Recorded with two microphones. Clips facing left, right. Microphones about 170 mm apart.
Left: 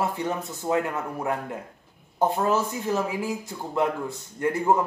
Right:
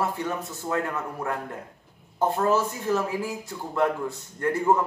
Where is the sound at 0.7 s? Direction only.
15° left (ahead or behind).